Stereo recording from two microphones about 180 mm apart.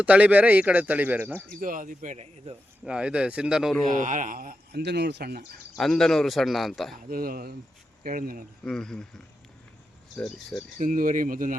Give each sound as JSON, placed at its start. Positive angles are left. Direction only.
{"t": 0.0, "sound": "speech", "side_deg": -5}
{"t": 1.5, "sound": "speech", "side_deg": -50}
{"t": 2.8, "sound": "a man's voice", "side_deg": -5}
{"t": 3.8, "sound": "speech", "side_deg": -45}
{"t": 5.7, "sound": "a man's voice", "side_deg": 0}
{"t": 7.1, "sound": "speech", "side_deg": -55}
{"t": 8.6, "sound": "a man's voice", "side_deg": 5}
{"t": 10.2, "sound": "a man's voice", "side_deg": 0}
{"t": 10.8, "sound": "speech", "side_deg": -50}